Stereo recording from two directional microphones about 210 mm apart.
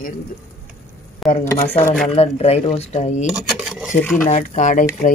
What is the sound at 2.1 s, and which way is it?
Speech, 30° left (ahead or behind).